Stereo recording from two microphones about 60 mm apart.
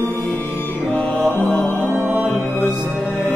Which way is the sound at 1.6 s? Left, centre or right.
Left.